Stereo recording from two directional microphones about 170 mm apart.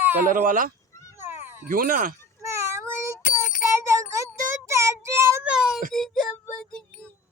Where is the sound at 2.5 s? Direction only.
15° right (ahead or behind); by 6.2 s centre (ahead or behind).